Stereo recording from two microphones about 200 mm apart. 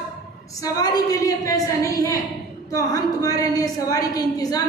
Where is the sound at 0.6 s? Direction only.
20° left (ahead or behind).